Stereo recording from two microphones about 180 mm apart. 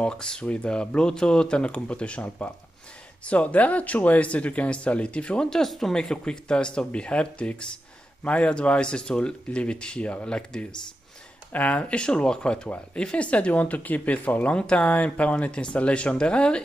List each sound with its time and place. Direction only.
0.0 s speech: 5° left (ahead or behind)